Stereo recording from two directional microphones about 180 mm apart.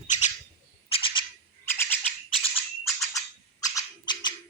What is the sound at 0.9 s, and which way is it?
Bird, 30° left (ahead or behind).